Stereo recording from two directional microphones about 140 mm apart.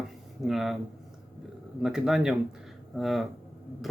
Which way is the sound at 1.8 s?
5° right (ahead or behind).